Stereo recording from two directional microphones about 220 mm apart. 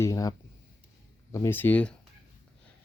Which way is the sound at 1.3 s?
10° left (ahead or behind).